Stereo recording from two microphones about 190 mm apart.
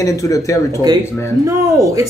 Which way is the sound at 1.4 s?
15° right (ahead or behind).